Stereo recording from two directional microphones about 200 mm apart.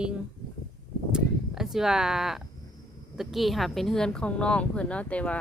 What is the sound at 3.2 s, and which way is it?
Speech, centre (ahead or behind).